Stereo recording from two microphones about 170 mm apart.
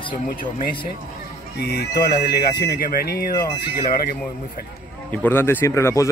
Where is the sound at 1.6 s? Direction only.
65° left (ahead or behind).